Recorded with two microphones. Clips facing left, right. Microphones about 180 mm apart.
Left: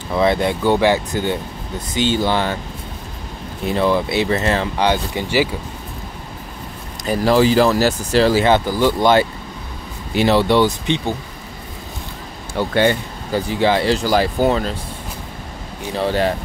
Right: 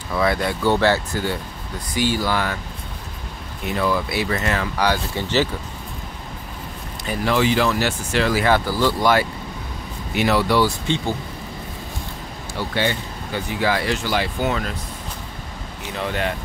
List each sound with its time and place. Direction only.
0.1 s speech: 25° left (ahead or behind)
3.6 s speech: 25° left (ahead or behind)
7.1 s speech: 35° left (ahead or behind); by 11.1 s 20° left (ahead or behind)
12.5 s speech: 50° left (ahead or behind)
13.3 s speech: 30° left (ahead or behind)
15.9 s speech: 35° left (ahead or behind)